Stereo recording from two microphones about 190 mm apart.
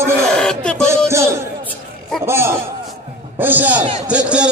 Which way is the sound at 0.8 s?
15° right (ahead or behind).